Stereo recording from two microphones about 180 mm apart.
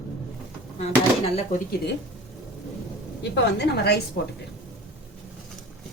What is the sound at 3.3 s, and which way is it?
Speech, 70° left (ahead or behind).